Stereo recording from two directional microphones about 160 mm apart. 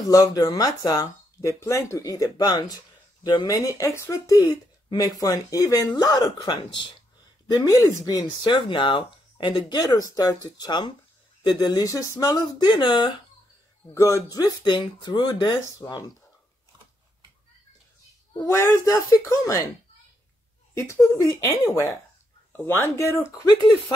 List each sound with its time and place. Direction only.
0.1 s speech: 20° left (ahead or behind)
18.3 s speech: 20° left (ahead or behind)
20.7 s speech: 15° left (ahead or behind)